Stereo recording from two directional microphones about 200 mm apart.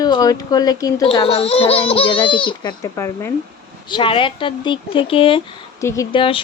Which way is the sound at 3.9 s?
25° left (ahead or behind).